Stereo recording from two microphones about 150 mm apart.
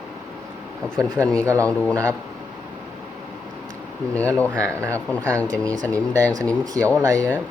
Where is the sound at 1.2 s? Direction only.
10° left (ahead or behind).